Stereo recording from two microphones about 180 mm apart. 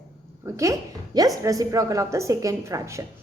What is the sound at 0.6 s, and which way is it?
A woman's voice, 20° right (ahead or behind).